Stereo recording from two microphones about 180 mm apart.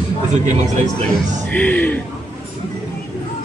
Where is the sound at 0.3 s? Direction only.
40° right (ahead or behind).